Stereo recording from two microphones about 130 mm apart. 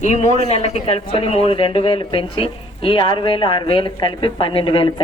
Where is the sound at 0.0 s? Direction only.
65° left (ahead or behind).